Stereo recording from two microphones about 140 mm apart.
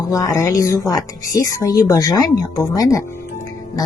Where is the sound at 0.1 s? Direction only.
25° left (ahead or behind).